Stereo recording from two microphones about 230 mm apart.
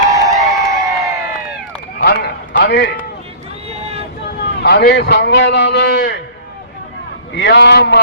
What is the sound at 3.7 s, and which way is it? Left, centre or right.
Vehicle, right.